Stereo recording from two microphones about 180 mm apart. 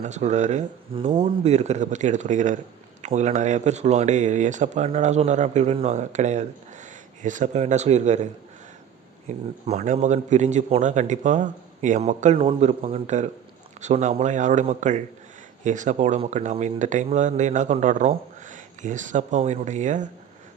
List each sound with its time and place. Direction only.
0.0 s speech: 40° right (ahead or behind)
9.3 s speech: 40° right (ahead or behind)